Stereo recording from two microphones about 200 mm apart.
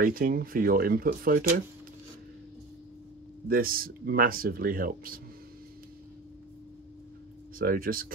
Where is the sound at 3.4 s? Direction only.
45° right (ahead or behind).